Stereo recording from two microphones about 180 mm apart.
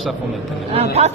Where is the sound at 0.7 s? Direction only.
35° right (ahead or behind).